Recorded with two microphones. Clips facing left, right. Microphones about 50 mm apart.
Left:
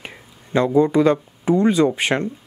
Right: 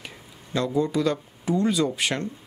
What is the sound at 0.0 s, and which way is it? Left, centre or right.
Speech, left.